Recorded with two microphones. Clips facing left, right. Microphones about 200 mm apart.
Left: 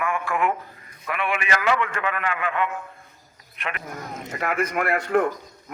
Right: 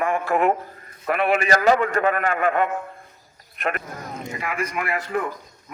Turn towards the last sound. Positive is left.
turn(degrees=60)  # may be behind; listen again after turning